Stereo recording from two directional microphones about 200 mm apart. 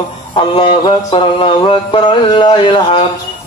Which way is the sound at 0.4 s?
25° left (ahead or behind).